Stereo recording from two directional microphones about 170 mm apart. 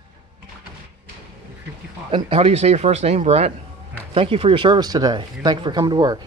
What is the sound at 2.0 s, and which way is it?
Speech, 30° right (ahead or behind).